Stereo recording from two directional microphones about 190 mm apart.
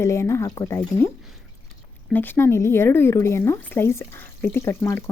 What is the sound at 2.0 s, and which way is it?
Speech, 10° left (ahead or behind).